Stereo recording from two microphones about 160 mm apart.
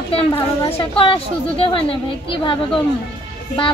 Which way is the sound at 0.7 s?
35° left (ahead or behind).